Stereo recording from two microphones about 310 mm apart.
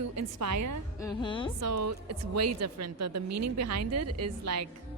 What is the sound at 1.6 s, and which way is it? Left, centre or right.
A woman's voice, right.